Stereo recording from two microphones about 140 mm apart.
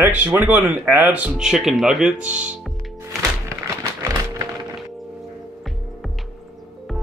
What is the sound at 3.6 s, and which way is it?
Music, 25° right (ahead or behind).